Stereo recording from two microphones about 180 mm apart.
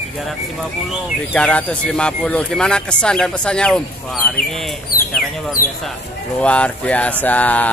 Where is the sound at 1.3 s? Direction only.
5° left (ahead or behind).